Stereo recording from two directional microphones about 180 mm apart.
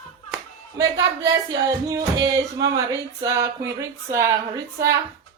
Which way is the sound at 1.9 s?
20° right (ahead or behind).